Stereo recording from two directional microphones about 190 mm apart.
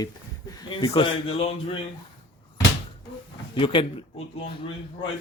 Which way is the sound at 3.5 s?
25° left (ahead or behind).